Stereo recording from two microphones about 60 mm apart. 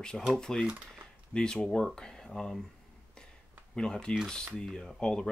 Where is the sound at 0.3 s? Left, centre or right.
Centre.